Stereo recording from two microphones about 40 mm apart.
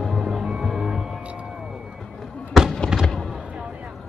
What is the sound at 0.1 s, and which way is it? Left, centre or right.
Music, centre.